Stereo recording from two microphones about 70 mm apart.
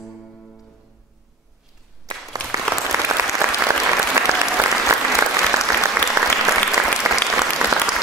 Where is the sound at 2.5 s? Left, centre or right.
Right.